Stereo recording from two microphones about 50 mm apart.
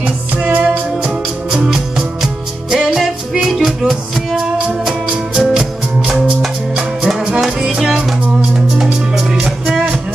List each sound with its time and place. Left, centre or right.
0.0 s music: right
1.5 s music: centre
5.3 s music: centre
7.3 s music: centre
9.1 s music: centre